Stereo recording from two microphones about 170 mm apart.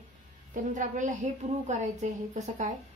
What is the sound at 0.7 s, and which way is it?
A woman's voice, 45° right (ahead or behind).